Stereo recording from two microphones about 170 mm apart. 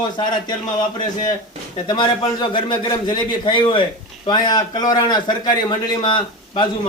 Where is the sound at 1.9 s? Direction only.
25° left (ahead or behind).